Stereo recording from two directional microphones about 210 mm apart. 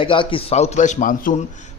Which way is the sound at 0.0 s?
25° left (ahead or behind).